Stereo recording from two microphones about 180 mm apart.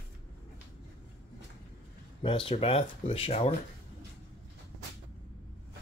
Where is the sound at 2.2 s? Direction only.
30° left (ahead or behind).